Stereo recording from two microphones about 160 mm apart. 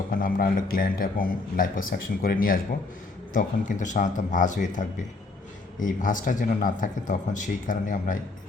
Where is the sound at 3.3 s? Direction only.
55° left (ahead or behind).